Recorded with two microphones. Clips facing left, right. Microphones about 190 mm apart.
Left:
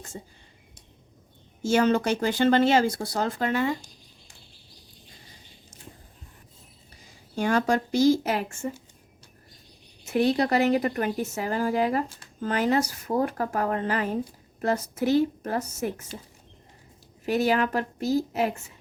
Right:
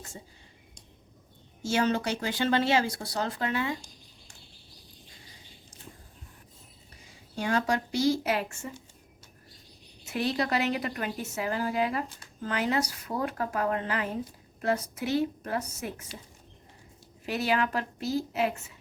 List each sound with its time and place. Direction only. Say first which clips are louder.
1.6 s speech: left 5 dB; 50° left (ahead or behind)
7.3 s speech: left 4 dB; 45° left (ahead or behind)
10.1 s speech: left 6 dB; 45° left (ahead or behind)
17.2 s speech: left 5 dB; 45° left (ahead or behind)